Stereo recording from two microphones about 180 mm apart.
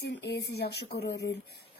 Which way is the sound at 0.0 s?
70° left (ahead or behind).